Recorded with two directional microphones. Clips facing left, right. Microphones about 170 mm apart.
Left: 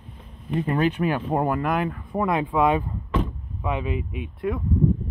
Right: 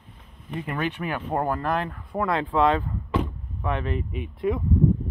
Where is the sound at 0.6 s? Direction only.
30° left (ahead or behind).